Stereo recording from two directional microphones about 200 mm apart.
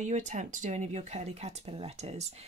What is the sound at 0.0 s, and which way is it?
Speech, 35° right (ahead or behind).